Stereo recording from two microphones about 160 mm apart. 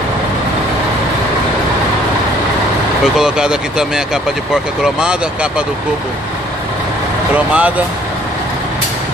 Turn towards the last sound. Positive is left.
turn(degrees=-10)  # may be behind; listen again after turning